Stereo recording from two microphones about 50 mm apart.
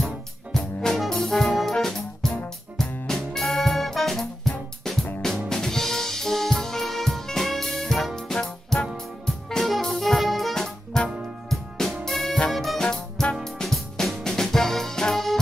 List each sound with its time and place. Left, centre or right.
0.0 s music: centre
0.9 s brass instrument: centre
2.8 s music: centre